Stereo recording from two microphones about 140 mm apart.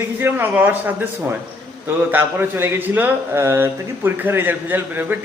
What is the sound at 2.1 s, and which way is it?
Speech, 15° right (ahead or behind).